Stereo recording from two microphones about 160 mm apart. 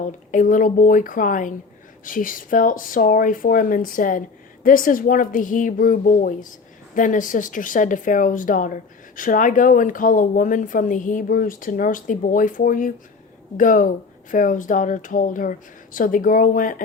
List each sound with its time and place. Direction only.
0.0 s a woman's voice: 55° left (ahead or behind)